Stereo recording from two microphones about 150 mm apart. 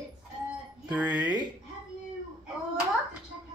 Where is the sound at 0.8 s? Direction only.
10° right (ahead or behind).